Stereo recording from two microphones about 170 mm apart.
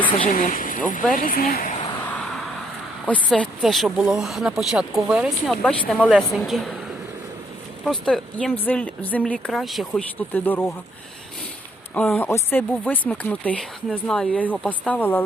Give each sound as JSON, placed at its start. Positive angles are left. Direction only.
{"t": 0.3, "sound": "speech", "side_deg": 55}
{"t": 3.1, "sound": "speech", "side_deg": 5}
{"t": 7.9, "sound": "speech", "side_deg": 5}
{"t": 11.9, "sound": "speech", "side_deg": 10}